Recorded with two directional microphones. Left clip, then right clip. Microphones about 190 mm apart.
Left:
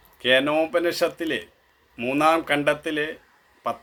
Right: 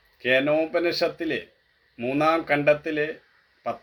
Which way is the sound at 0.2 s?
20° left (ahead or behind).